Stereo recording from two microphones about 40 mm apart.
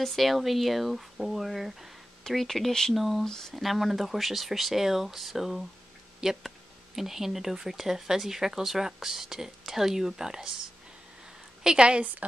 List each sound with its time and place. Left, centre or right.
0.0 s speech: centre
2.2 s speech: centre
3.3 s speech: centre
3.5 s speech: centre
11.6 s a woman's voice: right
12.2 s speech: right